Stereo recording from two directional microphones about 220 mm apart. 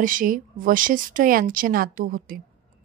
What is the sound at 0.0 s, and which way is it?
A woman's voice, 40° right (ahead or behind).